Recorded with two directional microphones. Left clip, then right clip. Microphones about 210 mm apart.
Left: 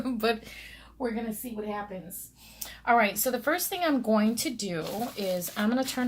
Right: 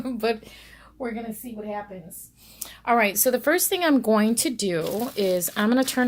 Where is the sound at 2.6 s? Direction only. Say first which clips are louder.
Right 2 dB; 40° right (ahead or behind).